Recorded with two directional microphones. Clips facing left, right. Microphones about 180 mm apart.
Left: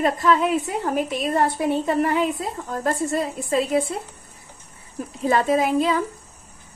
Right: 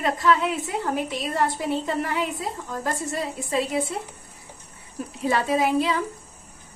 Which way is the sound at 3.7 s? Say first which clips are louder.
Left 7 dB; 50° left (ahead or behind).